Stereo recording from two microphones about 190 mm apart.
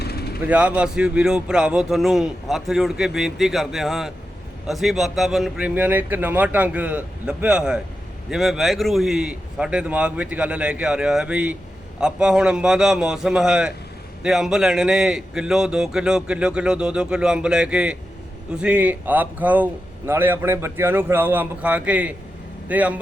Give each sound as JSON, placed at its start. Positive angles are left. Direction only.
{"t": 0.0, "sound": "vehicle", "side_deg": 55}
{"t": 0.4, "sound": "a man's voice", "side_deg": -5}